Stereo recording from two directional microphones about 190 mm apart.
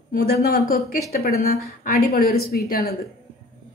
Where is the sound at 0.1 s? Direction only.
50° left (ahead or behind).